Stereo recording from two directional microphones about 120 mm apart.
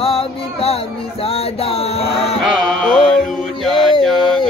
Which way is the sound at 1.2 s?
55° left (ahead or behind).